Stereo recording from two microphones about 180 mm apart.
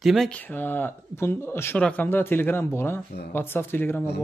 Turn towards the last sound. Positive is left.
turn(degrees=10)  # may be behind; listen again after turning